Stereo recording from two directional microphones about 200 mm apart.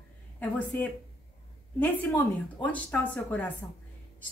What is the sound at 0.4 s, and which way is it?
Speech, 5° left (ahead or behind).